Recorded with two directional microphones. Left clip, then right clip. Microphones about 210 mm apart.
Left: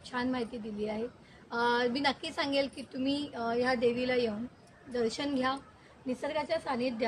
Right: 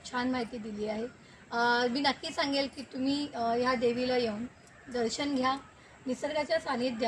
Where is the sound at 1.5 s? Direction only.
5° left (ahead or behind).